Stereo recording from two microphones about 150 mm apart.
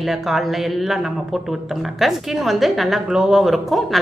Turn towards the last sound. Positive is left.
turn(degrees=0)  # may be behind; listen again after turning